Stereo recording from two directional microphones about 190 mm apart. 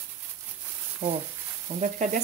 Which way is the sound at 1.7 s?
35° right (ahead or behind).